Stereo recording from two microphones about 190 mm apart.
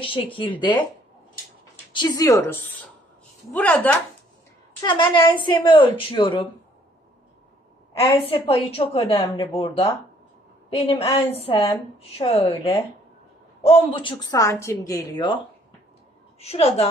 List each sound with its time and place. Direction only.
0.4 s a woman's voice: 25° left (ahead or behind)
2.0 s a woman's voice: 20° left (ahead or behind)
4.8 s a woman's voice: 25° left (ahead or behind)
8.0 s a woman's voice: 30° left (ahead or behind)
13.7 s a woman's voice: 30° left (ahead or behind)
16.3 s a woman's voice: 30° left (ahead or behind)